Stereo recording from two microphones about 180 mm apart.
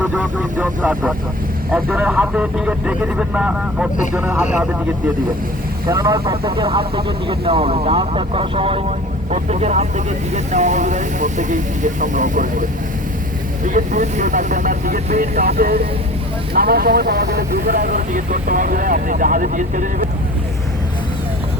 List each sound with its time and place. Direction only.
0.0 s speech: 5° right (ahead or behind)
5.8 s speech: 20° right (ahead or behind); by 12.6 s 45° right (ahead or behind)
13.7 s speech: 45° right (ahead or behind)